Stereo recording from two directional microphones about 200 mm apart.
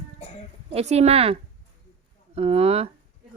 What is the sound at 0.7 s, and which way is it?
A woman's voice, 30° right (ahead or behind).